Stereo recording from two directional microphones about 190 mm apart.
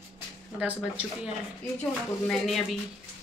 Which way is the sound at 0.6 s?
5° right (ahead or behind).